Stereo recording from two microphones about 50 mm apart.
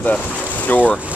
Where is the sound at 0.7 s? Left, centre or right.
Left.